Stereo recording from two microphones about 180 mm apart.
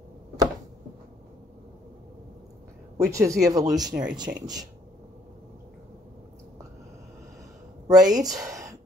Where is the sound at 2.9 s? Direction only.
15° right (ahead or behind).